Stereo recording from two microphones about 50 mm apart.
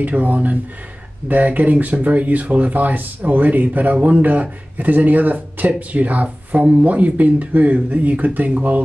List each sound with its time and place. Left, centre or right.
0.0 s speech: right